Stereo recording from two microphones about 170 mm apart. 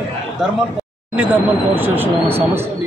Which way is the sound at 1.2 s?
10° right (ahead or behind).